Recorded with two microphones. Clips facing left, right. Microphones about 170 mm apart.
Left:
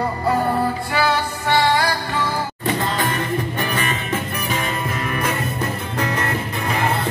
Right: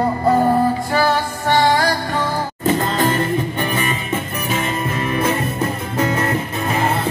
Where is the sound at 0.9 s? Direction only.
45° right (ahead or behind).